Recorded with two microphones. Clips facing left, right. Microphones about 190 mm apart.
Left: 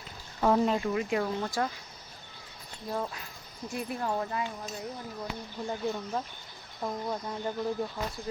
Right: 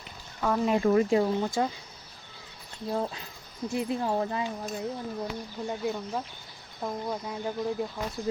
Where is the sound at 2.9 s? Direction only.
25° right (ahead or behind).